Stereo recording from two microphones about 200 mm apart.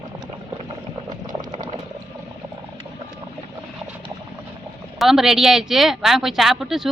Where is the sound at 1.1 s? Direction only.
20° right (ahead or behind).